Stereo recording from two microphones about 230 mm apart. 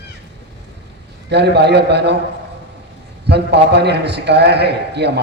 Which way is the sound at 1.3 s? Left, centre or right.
Right.